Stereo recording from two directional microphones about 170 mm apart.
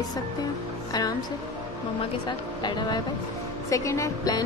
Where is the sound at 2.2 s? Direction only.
25° left (ahead or behind).